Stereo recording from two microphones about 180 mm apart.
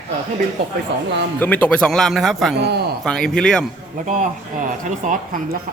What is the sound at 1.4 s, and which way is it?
Speech, 10° left (ahead or behind).